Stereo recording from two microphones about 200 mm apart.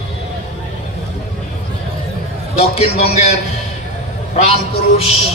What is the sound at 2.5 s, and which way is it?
Speech, 30° left (ahead or behind).